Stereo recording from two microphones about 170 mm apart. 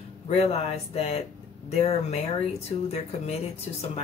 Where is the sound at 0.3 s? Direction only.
40° left (ahead or behind).